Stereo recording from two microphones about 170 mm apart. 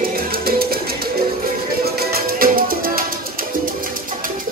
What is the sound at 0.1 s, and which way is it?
Music, 60° right (ahead or behind).